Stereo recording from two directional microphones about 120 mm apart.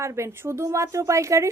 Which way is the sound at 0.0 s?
25° right (ahead or behind).